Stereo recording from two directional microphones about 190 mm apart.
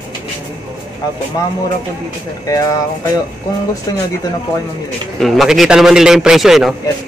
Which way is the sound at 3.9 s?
20° left (ahead or behind).